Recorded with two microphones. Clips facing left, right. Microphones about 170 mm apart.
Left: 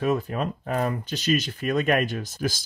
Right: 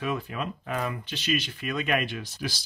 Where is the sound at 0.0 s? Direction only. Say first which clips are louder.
Left 6 dB; 40° left (ahead or behind).